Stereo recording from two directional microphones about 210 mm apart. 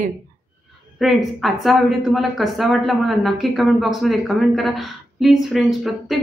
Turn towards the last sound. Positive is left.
turn(degrees=0)  # may be behind; listen again after turning